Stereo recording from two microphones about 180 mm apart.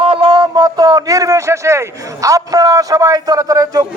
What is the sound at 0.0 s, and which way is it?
A man's voice, 30° right (ahead or behind).